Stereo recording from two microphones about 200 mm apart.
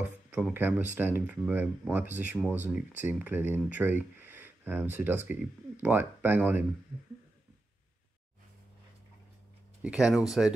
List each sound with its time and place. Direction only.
0.0 s speech: 10° right (ahead or behind)
9.8 s speech: 5° right (ahead or behind)